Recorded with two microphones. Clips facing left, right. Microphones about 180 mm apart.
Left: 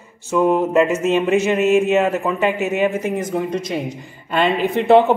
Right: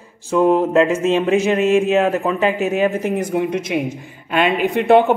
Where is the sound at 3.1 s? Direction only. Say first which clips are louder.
Right 2 dB; 10° right (ahead or behind).